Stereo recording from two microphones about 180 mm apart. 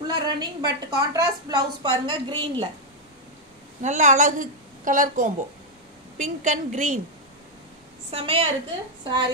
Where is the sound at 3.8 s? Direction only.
40° right (ahead or behind).